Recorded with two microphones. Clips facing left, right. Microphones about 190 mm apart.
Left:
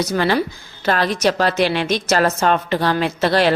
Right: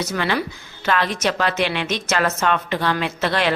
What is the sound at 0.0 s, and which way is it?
Speech, 35° left (ahead or behind).